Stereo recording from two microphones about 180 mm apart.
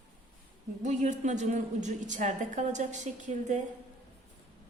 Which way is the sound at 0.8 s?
40° right (ahead or behind).